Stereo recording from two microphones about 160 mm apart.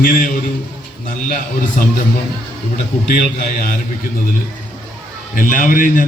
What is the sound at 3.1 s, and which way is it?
Speech, 55° left (ahead or behind).